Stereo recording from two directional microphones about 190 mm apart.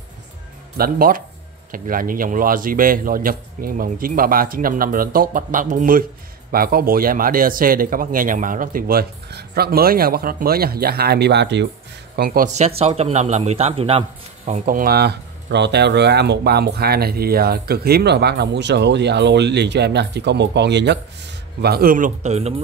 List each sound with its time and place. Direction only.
0.7 s speech: 50° right (ahead or behind)
12.2 s a man's voice: 50° right (ahead or behind)